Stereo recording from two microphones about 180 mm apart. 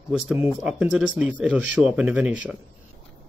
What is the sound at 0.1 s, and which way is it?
Speech, 10° right (ahead or behind).